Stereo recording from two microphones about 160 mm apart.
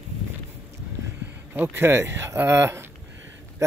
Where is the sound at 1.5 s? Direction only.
15° right (ahead or behind).